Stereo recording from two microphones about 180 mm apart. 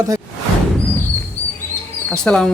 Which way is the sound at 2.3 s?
5° left (ahead or behind).